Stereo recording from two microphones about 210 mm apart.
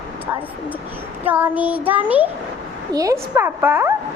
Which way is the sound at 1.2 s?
10° right (ahead or behind).